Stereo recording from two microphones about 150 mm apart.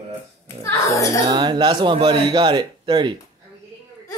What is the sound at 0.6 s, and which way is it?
Speech, 20° left (ahead or behind).